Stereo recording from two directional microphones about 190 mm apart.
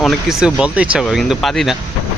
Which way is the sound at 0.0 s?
Centre (ahead or behind).